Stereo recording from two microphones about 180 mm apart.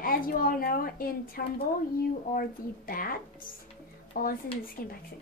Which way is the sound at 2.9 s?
55° left (ahead or behind).